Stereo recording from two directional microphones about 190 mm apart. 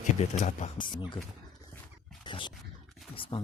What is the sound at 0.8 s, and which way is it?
Speech, 25° left (ahead or behind).